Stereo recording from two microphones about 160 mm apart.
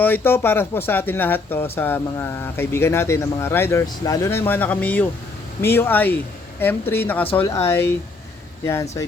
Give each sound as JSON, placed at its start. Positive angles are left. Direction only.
{"t": 0.0, "sound": "speech", "side_deg": 15}